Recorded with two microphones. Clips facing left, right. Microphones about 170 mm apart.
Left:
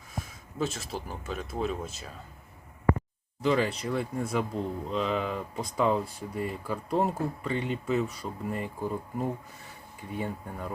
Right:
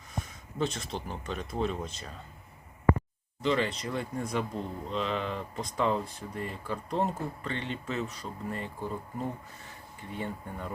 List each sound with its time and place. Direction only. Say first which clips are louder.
0.1 s speech: even; 5° left (ahead or behind)
3.4 s speech: left 2 dB; 10° left (ahead or behind)